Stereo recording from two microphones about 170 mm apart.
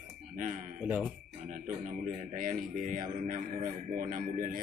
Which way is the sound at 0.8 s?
10° right (ahead or behind).